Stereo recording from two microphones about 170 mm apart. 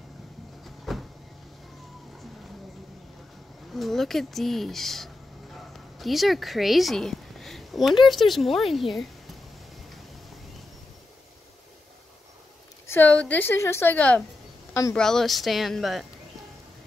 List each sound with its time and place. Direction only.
0.7 s vehicle: centre (ahead or behind)
3.7 s speech: centre (ahead or behind)
12.8 s a woman's voice: 10° left (ahead or behind)
15.0 s speech: 5° left (ahead or behind)